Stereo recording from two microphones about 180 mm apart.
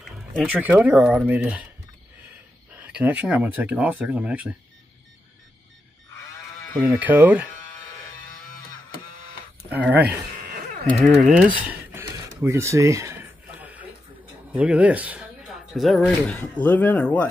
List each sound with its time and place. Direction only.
0.0 s speech: 5° right (ahead or behind)
2.7 s speech: 5° right (ahead or behind)
6.9 s speech: 10° right (ahead or behind)
9.7 s speech: 10° right (ahead or behind)
11.3 s a sound: 10° right (ahead or behind)
14.5 s speech: 5° right (ahead or behind); by 17.3 s 10° left (ahead or behind)